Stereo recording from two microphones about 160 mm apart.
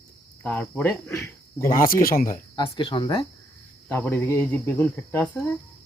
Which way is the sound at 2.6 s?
30° left (ahead or behind).